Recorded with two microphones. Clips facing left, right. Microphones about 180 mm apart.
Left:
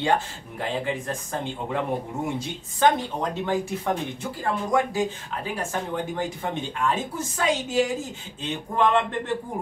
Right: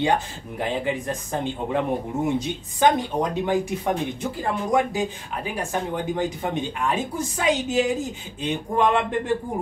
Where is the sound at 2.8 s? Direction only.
15° right (ahead or behind).